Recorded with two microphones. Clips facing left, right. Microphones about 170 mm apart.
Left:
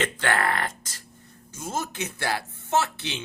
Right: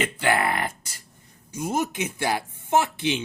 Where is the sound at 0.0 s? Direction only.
10° right (ahead or behind).